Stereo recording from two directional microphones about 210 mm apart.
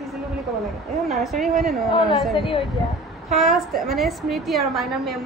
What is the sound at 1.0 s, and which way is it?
Speech, centre (ahead or behind).